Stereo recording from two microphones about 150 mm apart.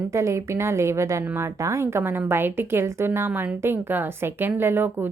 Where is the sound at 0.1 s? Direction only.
20° right (ahead or behind).